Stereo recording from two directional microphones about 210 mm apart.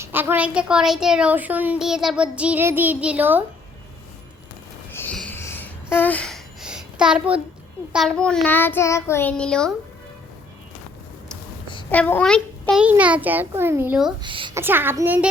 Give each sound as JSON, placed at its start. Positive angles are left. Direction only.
{"t": 0.0, "sound": "speech", "side_deg": -10}
{"t": 4.9, "sound": "wheeze", "side_deg": 10}
{"t": 7.9, "sound": "child singing", "side_deg": 0}
{"t": 11.9, "sound": "a child's voice", "side_deg": 10}
{"t": 14.2, "sound": "a sound", "side_deg": -25}
{"t": 14.6, "sound": "a child's voice", "side_deg": -10}